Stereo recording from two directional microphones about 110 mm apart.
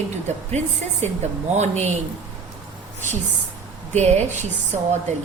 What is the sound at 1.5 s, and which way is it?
Speech, 90° right.